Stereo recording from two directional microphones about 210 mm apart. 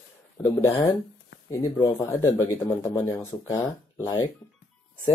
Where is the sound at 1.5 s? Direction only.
10° left (ahead or behind).